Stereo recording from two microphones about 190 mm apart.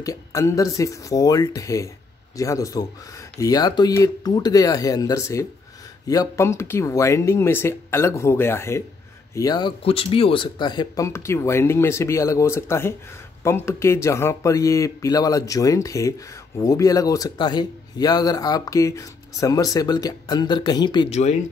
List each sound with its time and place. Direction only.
0.0 s speech: 15° left (ahead or behind)